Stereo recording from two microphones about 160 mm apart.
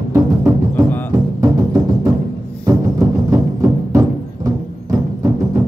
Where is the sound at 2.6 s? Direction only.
20° right (ahead or behind).